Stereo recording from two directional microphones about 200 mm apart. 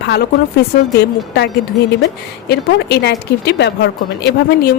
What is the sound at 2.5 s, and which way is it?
Speech, 55° left (ahead or behind).